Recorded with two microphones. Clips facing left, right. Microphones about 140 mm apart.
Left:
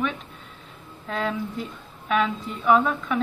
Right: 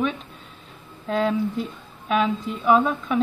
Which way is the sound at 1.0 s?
25° right (ahead or behind).